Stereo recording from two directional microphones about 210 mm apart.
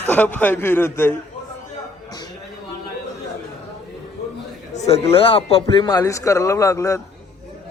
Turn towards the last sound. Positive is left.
turn(degrees=15)  # may be behind; listen again after turning